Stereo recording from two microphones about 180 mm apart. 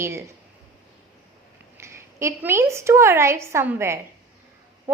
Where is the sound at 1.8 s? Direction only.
15° right (ahead or behind).